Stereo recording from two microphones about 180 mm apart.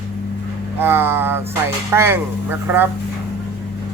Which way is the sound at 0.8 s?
10° right (ahead or behind).